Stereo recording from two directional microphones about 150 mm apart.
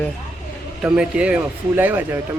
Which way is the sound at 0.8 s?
5° right (ahead or behind).